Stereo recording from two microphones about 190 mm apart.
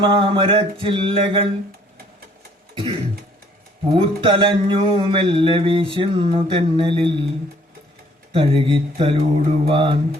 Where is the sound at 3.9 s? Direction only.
30° right (ahead or behind).